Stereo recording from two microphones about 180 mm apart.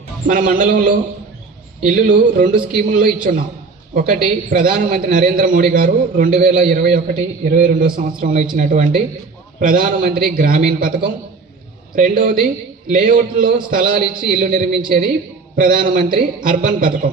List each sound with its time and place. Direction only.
0.3 s a man's voice: 50° right (ahead or behind)